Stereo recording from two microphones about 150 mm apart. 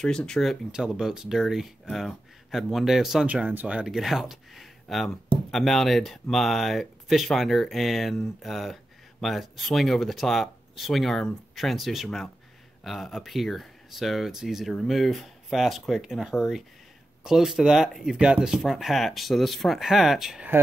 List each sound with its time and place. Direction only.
0.0 s speech: 5° left (ahead or behind)